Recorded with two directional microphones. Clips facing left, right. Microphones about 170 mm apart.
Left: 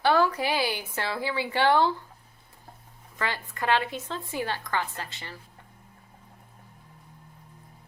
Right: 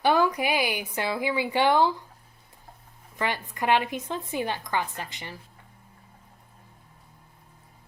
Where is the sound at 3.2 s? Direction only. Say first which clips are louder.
Right 2 dB; 15° right (ahead or behind).